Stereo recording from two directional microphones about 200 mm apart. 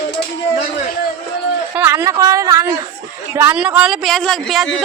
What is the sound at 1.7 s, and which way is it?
A woman's voice, 10° right (ahead or behind).